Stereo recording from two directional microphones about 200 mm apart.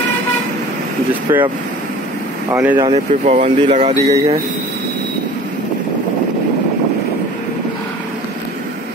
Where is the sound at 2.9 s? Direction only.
35° right (ahead or behind).